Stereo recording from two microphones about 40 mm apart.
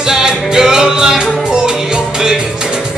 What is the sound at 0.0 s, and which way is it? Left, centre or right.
Music, centre.